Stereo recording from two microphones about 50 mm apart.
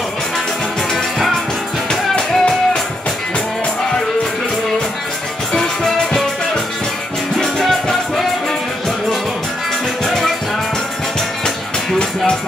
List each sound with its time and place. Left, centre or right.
1.9 s music: centre
7.3 s music: centre
10.0 s music: centre